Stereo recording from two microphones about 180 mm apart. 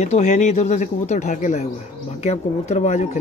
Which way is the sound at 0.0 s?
35° left (ahead or behind).